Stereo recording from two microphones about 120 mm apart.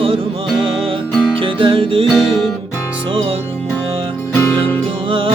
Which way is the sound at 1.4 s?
45° right (ahead or behind).